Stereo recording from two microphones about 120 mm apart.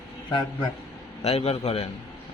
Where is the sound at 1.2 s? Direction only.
55° left (ahead or behind).